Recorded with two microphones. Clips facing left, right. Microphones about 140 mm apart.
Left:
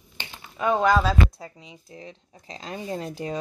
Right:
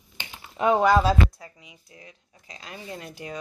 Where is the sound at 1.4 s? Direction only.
25° left (ahead or behind).